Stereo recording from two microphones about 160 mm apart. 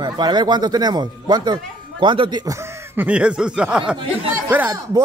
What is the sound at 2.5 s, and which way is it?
Speech, 10° right (ahead or behind).